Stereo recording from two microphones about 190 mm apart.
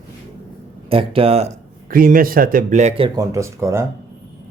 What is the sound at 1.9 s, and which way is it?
Speech, 45° right (ahead or behind).